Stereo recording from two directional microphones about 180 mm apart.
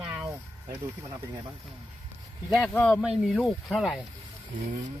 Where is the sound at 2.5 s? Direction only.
5° left (ahead or behind).